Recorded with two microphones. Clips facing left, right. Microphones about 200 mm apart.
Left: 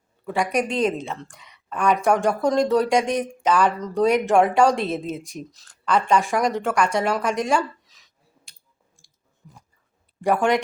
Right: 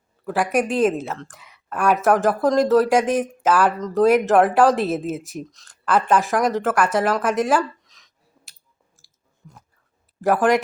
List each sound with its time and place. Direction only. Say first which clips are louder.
0.3 s speech: right 2 dB; 5° right (ahead or behind)
9.0 s chewing: left 1 dB; 5° right (ahead or behind)
9.4 s a sound: right 2 dB; centre (ahead or behind)
10.2 s speech: right 2 dB; centre (ahead or behind)